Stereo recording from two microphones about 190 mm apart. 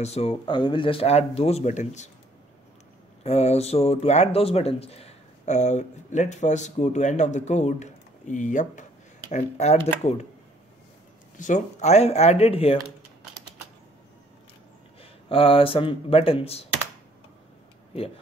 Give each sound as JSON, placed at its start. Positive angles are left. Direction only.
{"t": 0.0, "sound": "speech", "side_deg": 30}
{"t": 3.3, "sound": "speech", "side_deg": 35}
{"t": 11.3, "sound": "speech", "side_deg": 40}
{"t": 15.0, "sound": "speech", "side_deg": 30}